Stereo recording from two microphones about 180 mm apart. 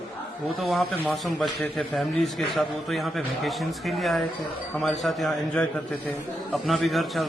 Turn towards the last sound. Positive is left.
turn(degrees=0)  # may be behind; listen again after turning